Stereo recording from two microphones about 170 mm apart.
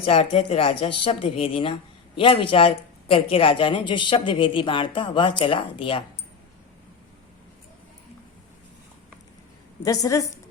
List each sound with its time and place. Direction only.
0.0 s speech: 35° left (ahead or behind)
9.8 s a woman's voice: 20° left (ahead or behind)